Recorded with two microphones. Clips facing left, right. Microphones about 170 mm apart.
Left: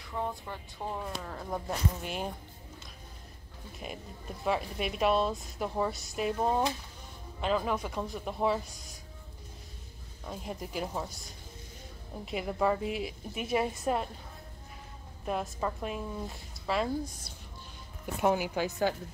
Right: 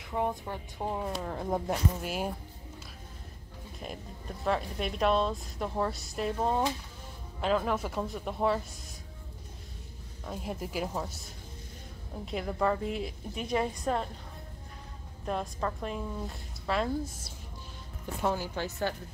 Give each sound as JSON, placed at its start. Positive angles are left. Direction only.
{"t": 0.0, "sound": "speech", "side_deg": -20}
{"t": 2.0, "sound": "a woman's voice", "side_deg": -5}
{"t": 4.5, "sound": "a woman's voice", "side_deg": 5}
{"t": 10.2, "sound": "a woman's voice", "side_deg": 0}
{"t": 15.2, "sound": "a woman's voice", "side_deg": 5}
{"t": 18.2, "sound": "a woman's voice", "side_deg": 15}